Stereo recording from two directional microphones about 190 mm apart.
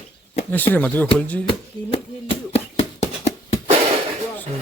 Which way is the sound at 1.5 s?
30° left (ahead or behind).